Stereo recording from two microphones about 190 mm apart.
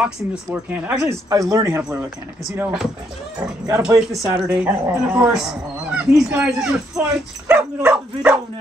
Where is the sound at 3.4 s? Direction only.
20° right (ahead or behind).